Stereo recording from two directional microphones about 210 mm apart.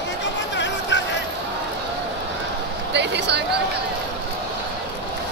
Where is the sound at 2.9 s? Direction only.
55° right (ahead or behind).